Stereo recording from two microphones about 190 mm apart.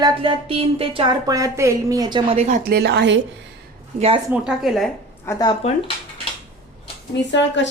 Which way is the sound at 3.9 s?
35° right (ahead or behind).